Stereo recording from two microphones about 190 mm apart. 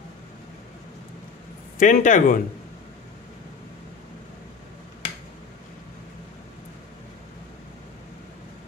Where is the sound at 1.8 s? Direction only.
40° left (ahead or behind).